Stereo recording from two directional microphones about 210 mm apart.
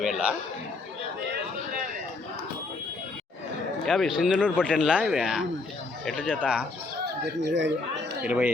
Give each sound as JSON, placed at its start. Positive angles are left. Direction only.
{"t": 0.0, "sound": "speech", "side_deg": -5}
{"t": 3.8, "sound": "speech", "side_deg": 0}
{"t": 7.0, "sound": "speech", "side_deg": -55}
{"t": 8.2, "sound": "speech", "side_deg": -5}